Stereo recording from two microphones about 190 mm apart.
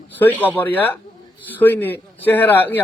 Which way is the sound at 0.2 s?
10° left (ahead or behind).